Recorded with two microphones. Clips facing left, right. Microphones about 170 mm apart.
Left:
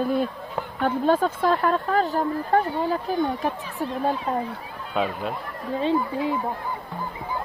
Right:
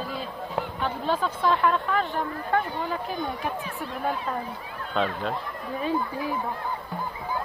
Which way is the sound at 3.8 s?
30° left (ahead or behind).